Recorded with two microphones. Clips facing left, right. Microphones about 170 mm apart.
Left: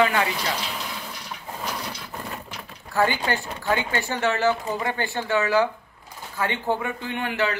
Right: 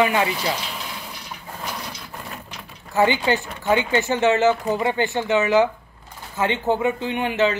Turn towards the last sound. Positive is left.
turn(degrees=-20)  # may be behind; listen again after turning